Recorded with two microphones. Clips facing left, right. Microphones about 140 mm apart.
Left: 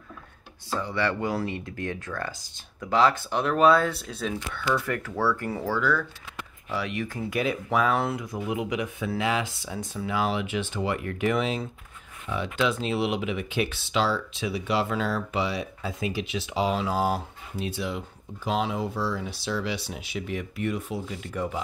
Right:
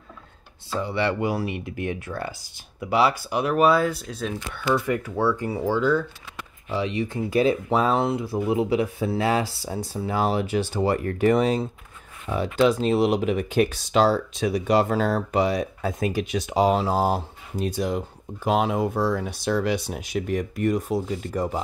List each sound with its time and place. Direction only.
0.7 s speech: 15° right (ahead or behind); by 4.4 s centre (ahead or behind)
4.6 s speech: 15° right (ahead or behind); by 21.5 s 40° right (ahead or behind)